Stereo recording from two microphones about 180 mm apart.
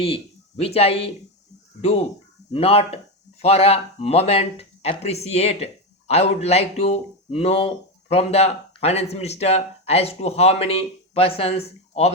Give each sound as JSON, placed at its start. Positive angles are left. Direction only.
{"t": 0.6, "sound": "speech", "side_deg": 35}